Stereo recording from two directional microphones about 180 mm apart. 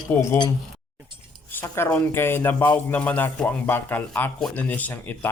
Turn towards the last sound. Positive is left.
turn(degrees=10)  # may be behind; listen again after turning